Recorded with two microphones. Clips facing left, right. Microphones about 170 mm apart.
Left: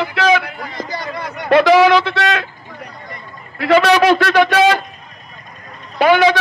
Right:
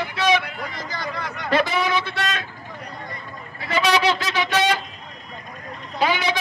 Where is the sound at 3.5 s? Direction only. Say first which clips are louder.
Left 9 dB; 75° left (ahead or behind).